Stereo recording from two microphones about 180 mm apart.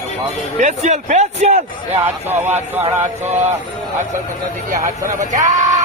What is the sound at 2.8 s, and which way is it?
Speech, 40° right (ahead or behind).